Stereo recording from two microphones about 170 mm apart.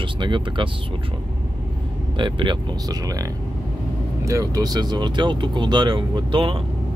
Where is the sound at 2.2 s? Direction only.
30° right (ahead or behind).